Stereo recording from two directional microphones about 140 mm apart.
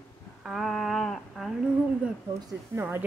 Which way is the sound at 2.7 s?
15° right (ahead or behind).